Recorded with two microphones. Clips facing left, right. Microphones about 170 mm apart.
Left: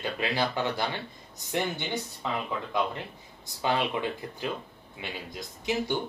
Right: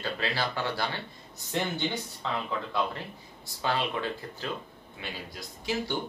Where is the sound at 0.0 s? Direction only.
20° left (ahead or behind).